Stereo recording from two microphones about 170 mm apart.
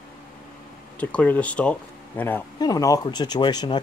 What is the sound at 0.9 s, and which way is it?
Speech, 10° left (ahead or behind).